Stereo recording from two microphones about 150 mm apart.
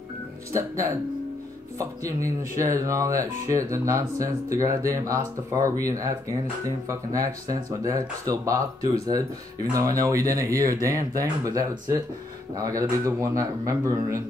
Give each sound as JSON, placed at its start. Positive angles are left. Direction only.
{"t": 0.5, "sound": "speech", "side_deg": -20}